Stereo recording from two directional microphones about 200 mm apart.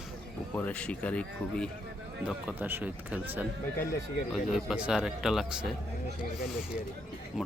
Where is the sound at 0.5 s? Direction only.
5° left (ahead or behind).